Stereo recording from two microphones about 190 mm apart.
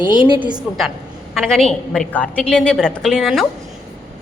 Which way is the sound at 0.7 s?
5° right (ahead or behind).